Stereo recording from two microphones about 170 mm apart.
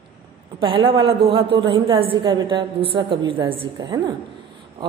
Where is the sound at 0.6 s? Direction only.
30° right (ahead or behind).